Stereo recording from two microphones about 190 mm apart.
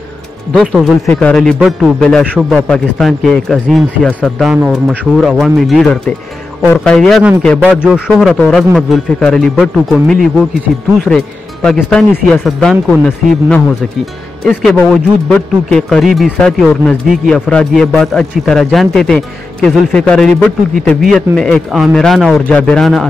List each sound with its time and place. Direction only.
0.6 s speech: centre (ahead or behind)
14.4 s speech: centre (ahead or behind)